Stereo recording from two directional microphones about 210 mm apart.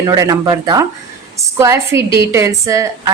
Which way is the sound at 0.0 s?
15° right (ahead or behind).